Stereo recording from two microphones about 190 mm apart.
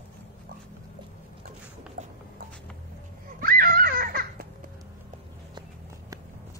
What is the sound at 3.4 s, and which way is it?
Baby laughter, 50° right (ahead or behind).